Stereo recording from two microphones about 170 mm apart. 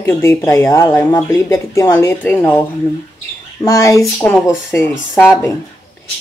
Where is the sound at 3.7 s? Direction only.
20° left (ahead or behind).